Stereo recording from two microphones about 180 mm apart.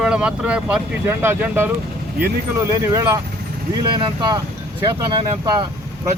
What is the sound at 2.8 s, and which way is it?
Speech, 15° right (ahead or behind).